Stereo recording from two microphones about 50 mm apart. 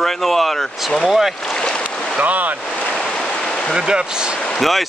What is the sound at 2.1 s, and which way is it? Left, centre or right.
Speech, right.